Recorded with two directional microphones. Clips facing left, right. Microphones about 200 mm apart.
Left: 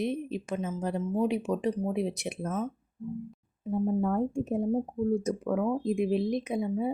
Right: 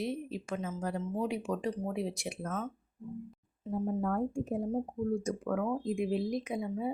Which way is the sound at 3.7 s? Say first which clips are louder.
Left 5 dB; 25° left (ahead or behind).